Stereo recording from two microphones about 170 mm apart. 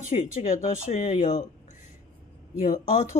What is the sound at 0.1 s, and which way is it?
Speech, 40° left (ahead or behind).